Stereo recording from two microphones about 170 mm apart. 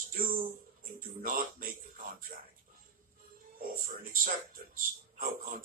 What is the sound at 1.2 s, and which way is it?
Speech, 55° right (ahead or behind).